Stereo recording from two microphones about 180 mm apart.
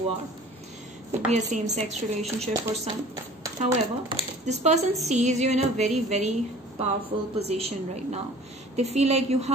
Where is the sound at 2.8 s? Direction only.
20° right (ahead or behind).